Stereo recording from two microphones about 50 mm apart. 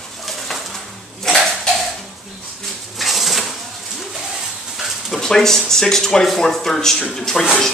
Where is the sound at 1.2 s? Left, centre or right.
Centre.